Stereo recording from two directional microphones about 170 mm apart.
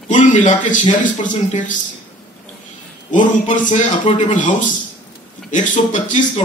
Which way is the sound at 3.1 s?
50° left (ahead or behind).